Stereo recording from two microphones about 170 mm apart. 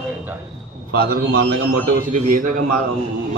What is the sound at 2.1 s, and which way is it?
Speech, 50° right (ahead or behind).